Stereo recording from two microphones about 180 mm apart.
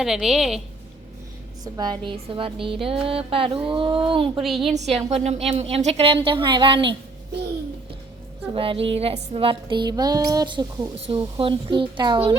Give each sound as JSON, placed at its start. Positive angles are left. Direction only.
{"t": 0.0, "sound": "a woman's voice", "side_deg": 0}
{"t": 1.6, "sound": "speech", "side_deg": -20}
{"t": 4.4, "sound": "a woman's voice", "side_deg": 0}
{"t": 4.7, "sound": "a woman's voice", "side_deg": -35}
{"t": 8.5, "sound": "a woman's voice", "side_deg": -30}